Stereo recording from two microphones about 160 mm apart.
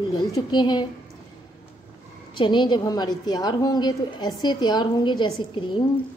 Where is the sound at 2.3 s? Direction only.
30° left (ahead or behind).